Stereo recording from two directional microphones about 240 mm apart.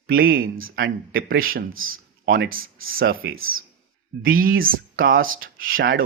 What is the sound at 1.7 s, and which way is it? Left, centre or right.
Speech, right.